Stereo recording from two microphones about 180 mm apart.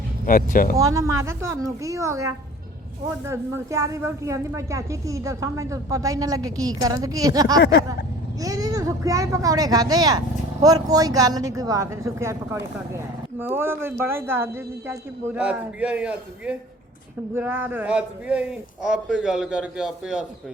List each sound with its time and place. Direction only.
0.3 s speech: 50° left (ahead or behind)
0.8 s a man's voice: 20° right (ahead or behind)